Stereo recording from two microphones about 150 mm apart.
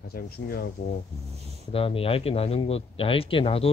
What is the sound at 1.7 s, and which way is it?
Speech, 40° left (ahead or behind).